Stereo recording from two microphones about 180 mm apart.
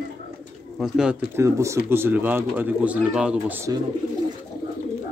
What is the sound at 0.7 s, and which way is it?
Speech, 5° right (ahead or behind).